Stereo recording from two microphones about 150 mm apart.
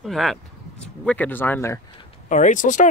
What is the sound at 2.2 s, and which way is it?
Speech, 55° left (ahead or behind).